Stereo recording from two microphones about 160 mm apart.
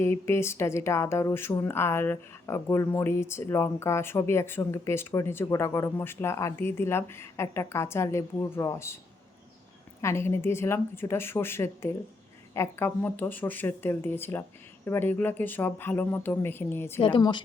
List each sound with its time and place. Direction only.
0.0 s speech: 15° left (ahead or behind)
10.0 s speech: 15° left (ahead or behind)
17.0 s a woman's voice: 25° left (ahead or behind)